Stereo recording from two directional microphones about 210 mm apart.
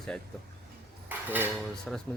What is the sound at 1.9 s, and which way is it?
Speech, 5° left (ahead or behind).